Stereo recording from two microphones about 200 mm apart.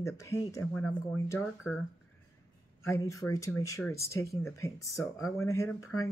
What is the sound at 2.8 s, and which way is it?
Speech, 15° left (ahead or behind).